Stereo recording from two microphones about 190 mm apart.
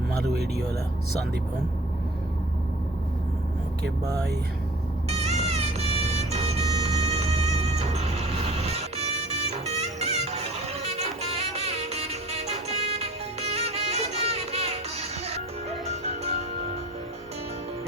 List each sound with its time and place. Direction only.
5.0 s music: 35° right (ahead or behind)